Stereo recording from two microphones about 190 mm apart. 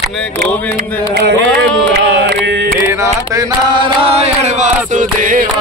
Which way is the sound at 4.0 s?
30° right (ahead or behind).